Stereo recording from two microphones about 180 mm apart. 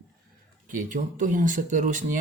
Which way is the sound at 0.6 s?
45° right (ahead or behind).